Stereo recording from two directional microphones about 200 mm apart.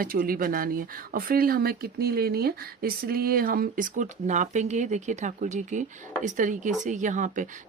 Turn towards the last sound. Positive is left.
turn(degrees=-40)  # may be behind; listen again after turning